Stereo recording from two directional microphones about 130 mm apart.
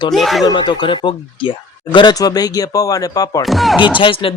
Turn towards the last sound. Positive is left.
turn(degrees=45)  # may be behind; listen again after turning